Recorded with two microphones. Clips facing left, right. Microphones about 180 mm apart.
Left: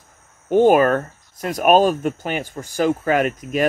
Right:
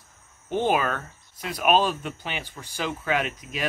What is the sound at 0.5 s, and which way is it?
Speech, 45° left (ahead or behind).